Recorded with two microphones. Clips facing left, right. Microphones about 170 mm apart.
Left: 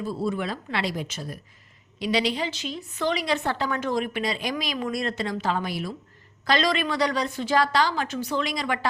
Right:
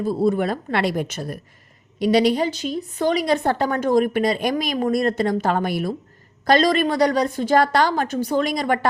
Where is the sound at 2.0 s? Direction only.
50° right (ahead or behind).